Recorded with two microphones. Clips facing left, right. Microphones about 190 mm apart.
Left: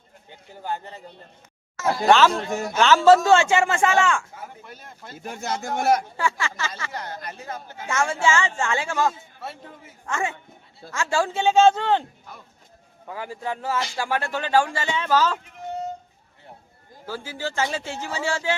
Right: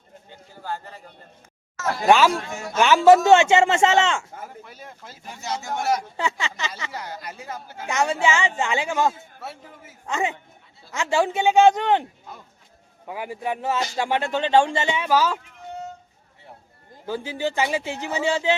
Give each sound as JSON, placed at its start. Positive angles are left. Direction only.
{"t": 0.3, "sound": "a sound", "side_deg": 20}
{"t": 2.0, "sound": "speech", "side_deg": -10}
{"t": 2.5, "sound": "a woman's voice", "side_deg": 35}
{"t": 2.7, "sound": "speech", "side_deg": -15}
{"t": 4.4, "sound": "speech", "side_deg": 0}
{"t": 5.1, "sound": "speech", "side_deg": 55}
{"t": 6.1, "sound": "speech", "side_deg": -20}
{"t": 6.9, "sound": "speech", "side_deg": -10}
{"t": 9.4, "sound": "speech", "side_deg": -5}
{"t": 10.1, "sound": "speech", "side_deg": -20}
{"t": 13.1, "sound": "speech", "side_deg": -15}
{"t": 17.1, "sound": "speech", "side_deg": -20}